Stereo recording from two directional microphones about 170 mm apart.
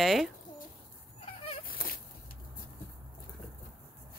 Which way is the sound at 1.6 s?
60° left (ahead or behind).